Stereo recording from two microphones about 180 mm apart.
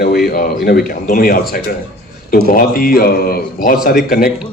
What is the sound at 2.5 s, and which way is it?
A man's voice, 55° left (ahead or behind).